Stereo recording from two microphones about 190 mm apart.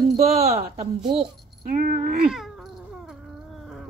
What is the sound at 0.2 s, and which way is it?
Speech, 30° right (ahead or behind).